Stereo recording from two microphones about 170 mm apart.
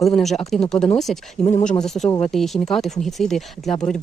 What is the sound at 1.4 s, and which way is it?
Speech, 45° left (ahead or behind).